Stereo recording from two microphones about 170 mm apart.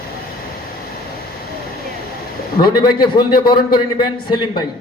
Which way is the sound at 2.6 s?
25° left (ahead or behind).